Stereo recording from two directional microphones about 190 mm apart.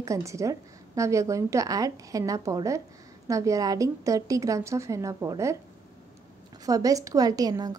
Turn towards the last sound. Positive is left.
turn(degrees=-20)  # may be behind; listen again after turning